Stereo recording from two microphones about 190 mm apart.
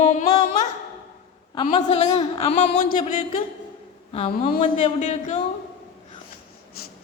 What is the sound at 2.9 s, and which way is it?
Speech, 45° left (ahead or behind).